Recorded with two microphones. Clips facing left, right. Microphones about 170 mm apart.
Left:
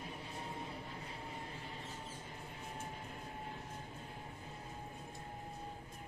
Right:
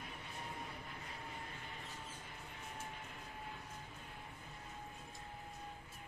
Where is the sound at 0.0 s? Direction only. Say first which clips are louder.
Left 3 dB; 30° left (ahead or behind).